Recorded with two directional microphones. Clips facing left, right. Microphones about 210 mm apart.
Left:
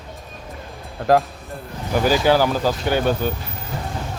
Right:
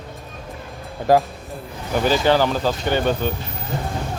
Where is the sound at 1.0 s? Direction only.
Centre (ahead or behind).